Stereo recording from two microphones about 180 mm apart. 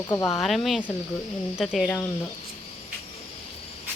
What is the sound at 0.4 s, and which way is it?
A woman's voice, centre (ahead or behind).